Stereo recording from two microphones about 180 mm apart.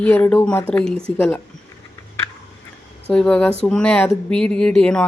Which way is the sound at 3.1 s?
5° left (ahead or behind).